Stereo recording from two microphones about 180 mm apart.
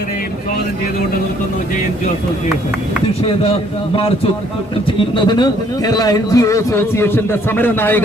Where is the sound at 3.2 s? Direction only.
35° left (ahead or behind).